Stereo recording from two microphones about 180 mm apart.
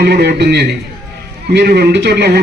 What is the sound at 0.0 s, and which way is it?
A man's voice, 65° right (ahead or behind).